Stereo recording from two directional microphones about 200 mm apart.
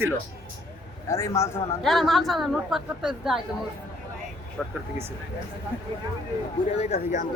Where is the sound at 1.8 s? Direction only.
Centre (ahead or behind).